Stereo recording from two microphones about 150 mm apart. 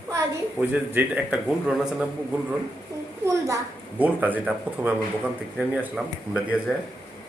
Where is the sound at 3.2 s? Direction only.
20° right (ahead or behind).